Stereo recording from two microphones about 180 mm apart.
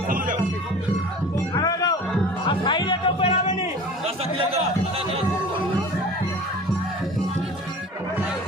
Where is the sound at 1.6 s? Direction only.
20° left (ahead or behind).